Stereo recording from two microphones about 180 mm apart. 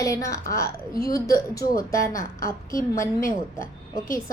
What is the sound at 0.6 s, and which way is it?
Speech, 60° left (ahead or behind).